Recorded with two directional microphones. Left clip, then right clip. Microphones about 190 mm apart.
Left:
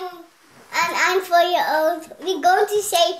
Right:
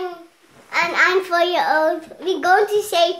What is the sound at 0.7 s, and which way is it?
A child's voice, 10° right (ahead or behind).